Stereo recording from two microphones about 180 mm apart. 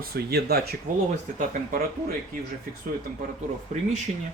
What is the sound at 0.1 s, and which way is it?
Speech, 60° right (ahead or behind).